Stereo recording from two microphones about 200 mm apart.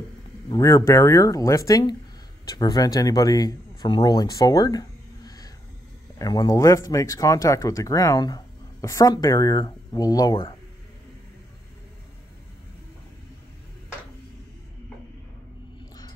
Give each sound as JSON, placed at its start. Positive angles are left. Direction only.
{"t": 0.5, "sound": "speech", "side_deg": 15}